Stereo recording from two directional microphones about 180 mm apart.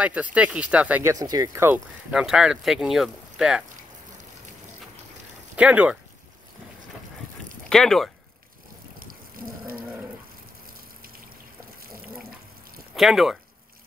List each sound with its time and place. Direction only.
0.0 s speech: 10° right (ahead or behind)
1.2 s speech: 20° right (ahead or behind); by 3.6 s 5° right (ahead or behind)
5.6 s speech: 5° right (ahead or behind)
7.7 s speech: 5° left (ahead or behind)
9.0 s livestock: 55° right (ahead or behind)
10.7 s water: 55° right (ahead or behind)
12.9 s speech: centre (ahead or behind)